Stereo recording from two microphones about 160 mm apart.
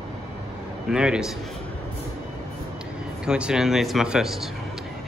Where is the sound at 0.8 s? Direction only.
5° right (ahead or behind).